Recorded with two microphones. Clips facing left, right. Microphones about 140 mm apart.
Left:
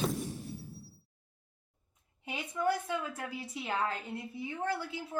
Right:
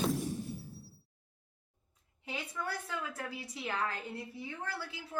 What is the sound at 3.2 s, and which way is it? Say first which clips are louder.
A woman's voice: left 2 dB; 25° left (ahead or behind).